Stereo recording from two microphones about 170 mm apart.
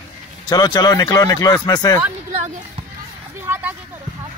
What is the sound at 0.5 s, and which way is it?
Speech, 25° left (ahead or behind).